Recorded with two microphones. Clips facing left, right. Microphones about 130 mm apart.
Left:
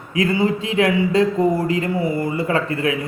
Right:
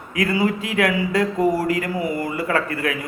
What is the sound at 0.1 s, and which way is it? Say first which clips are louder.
A man's voice: left 2 dB; 25° left (ahead or behind).